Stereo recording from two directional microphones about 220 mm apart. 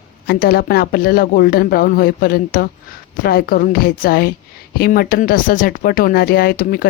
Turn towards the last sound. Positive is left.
turn(degrees=40)  # may be behind; listen again after turning